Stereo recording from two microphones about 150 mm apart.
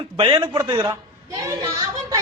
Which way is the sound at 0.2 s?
35° right (ahead or behind).